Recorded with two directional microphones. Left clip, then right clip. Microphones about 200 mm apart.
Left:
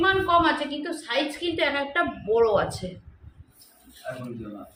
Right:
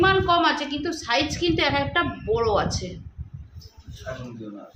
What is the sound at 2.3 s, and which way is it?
Speech, 5° right (ahead or behind).